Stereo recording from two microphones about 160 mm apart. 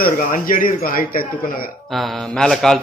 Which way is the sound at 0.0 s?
60° left (ahead or behind).